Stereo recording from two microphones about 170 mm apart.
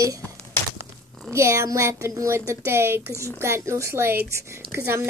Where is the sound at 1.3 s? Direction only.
15° right (ahead or behind).